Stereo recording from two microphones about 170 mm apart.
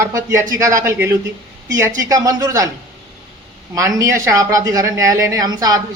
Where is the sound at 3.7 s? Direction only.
20° right (ahead or behind).